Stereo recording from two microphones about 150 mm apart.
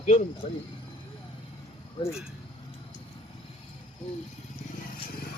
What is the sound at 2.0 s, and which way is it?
Speech, 30° left (ahead or behind).